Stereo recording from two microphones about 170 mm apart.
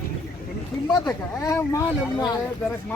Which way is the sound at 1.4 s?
15° left (ahead or behind).